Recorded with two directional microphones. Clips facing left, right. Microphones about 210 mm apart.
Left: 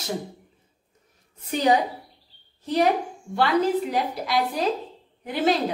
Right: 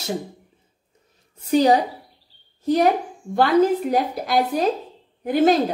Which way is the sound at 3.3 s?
45° right (ahead or behind).